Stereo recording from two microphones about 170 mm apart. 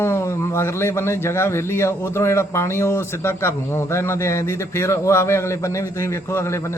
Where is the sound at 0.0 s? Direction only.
15° left (ahead or behind).